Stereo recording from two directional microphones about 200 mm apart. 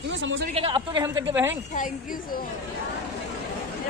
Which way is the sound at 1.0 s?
10° right (ahead or behind).